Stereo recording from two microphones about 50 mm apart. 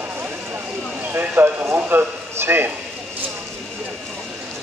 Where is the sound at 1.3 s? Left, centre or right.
Right.